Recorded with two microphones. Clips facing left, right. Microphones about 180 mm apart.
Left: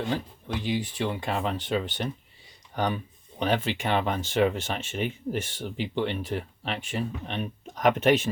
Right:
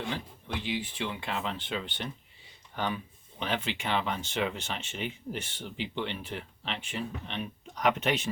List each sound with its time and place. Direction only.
0.1 s speech: 40° left (ahead or behind)